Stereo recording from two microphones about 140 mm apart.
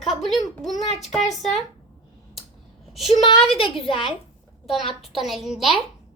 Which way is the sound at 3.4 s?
40° left (ahead or behind).